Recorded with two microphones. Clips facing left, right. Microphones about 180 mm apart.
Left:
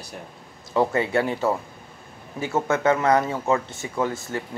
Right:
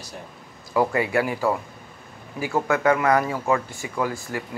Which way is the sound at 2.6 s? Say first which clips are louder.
Even; 20° left (ahead or behind).